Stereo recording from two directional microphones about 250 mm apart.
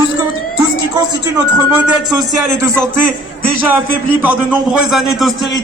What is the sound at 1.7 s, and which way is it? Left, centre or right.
Speech, centre.